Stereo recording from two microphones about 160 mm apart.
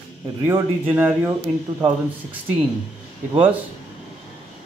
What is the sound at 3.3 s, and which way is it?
Speech, 10° right (ahead or behind).